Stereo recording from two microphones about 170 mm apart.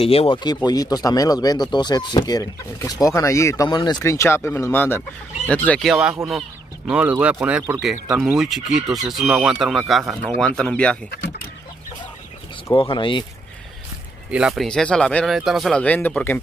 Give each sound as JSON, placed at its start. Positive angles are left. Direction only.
{"t": 0.0, "sound": "speech", "side_deg": 35}
{"t": 12.7, "sound": "speech", "side_deg": 30}
{"t": 14.3, "sound": "speech", "side_deg": 0}